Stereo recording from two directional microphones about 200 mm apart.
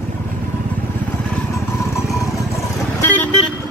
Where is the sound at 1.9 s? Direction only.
15° left (ahead or behind).